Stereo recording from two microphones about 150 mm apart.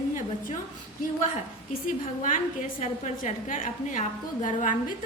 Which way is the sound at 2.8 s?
50° left (ahead or behind).